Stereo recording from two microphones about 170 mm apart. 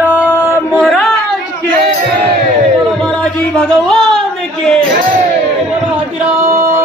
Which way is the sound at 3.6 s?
5° left (ahead or behind).